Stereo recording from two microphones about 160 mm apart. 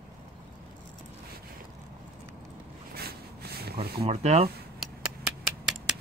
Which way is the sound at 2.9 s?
80° right.